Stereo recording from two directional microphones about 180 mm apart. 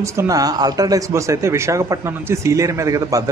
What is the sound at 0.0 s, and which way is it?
Speech, 15° right (ahead or behind).